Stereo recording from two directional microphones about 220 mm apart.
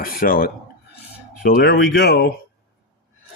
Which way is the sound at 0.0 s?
40° left (ahead or behind).